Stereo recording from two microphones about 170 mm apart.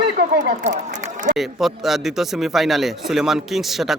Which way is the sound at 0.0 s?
70° right (ahead or behind).